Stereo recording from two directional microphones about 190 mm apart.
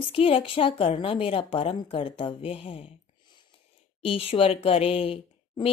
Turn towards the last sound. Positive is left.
turn(degrees=30)  # may be behind; listen again after turning